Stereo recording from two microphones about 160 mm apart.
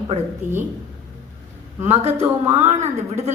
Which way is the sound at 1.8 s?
40° right (ahead or behind).